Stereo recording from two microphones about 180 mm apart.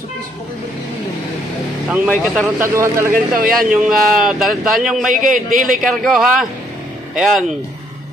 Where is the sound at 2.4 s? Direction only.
10° right (ahead or behind).